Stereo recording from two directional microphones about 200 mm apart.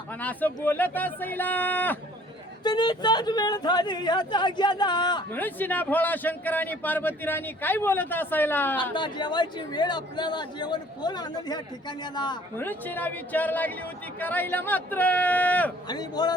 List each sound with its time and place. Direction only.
0.1 s a man's voice: 10° left (ahead or behind)
2.6 s speech: 20° left (ahead or behind)
5.3 s a man's voice: 10° left (ahead or behind)
8.8 s speech: 25° left (ahead or behind)
12.5 s a man's voice: 10° left (ahead or behind)
15.9 s speech: 20° left (ahead or behind)